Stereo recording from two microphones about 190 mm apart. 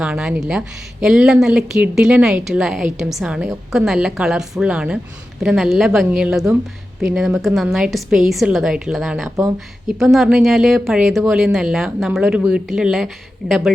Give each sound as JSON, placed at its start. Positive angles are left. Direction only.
{"t": 0.0, "sound": "a woman's voice", "side_deg": -5}